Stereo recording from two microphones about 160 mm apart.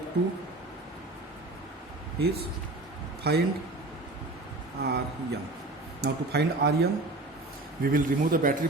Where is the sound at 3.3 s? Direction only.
90° right.